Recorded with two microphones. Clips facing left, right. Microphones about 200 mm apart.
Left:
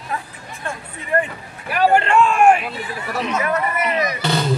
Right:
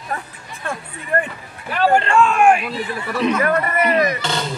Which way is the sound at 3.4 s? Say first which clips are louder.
Right 3 dB; 55° right (ahead or behind).